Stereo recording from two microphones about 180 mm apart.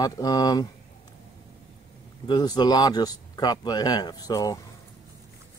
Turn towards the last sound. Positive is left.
turn(degrees=20)  # may be behind; listen again after turning